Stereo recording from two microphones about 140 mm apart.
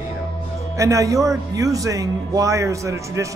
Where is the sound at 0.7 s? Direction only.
20° right (ahead or behind).